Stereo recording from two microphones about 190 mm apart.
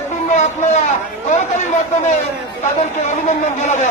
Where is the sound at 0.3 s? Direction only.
40° left (ahead or behind).